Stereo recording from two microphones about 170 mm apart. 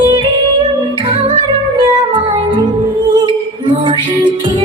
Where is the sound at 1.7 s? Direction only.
30° right (ahead or behind).